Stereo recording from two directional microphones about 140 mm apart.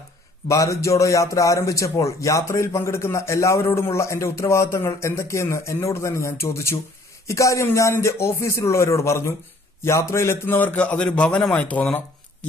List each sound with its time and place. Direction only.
0.5 s a man's voice: 25° left (ahead or behind)